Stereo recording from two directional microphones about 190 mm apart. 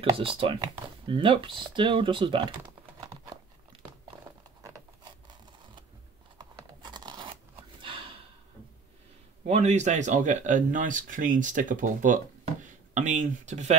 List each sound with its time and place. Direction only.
0.1 s speech: 30° right (ahead or behind)
6.3 s tearing: 20° right (ahead or behind)
7.8 s snort: 25° right (ahead or behind)
9.5 s speech: 40° right (ahead or behind)